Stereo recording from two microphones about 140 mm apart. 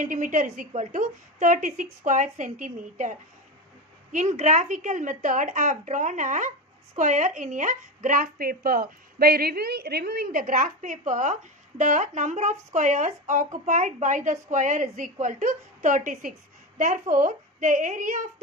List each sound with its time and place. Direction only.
0.0 s a woman's voice: 70° right (ahead or behind)